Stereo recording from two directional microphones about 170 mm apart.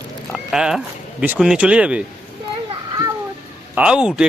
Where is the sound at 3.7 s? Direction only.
5° right (ahead or behind).